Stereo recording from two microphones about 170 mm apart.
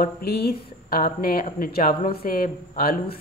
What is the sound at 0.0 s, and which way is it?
Speech, 70° left (ahead or behind).